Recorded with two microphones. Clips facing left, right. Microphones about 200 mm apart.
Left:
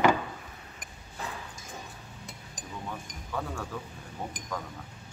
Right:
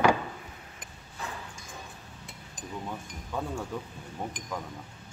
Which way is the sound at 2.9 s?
15° right (ahead or behind).